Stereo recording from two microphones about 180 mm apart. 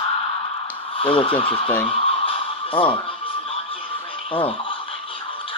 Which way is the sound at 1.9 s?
30° left (ahead or behind).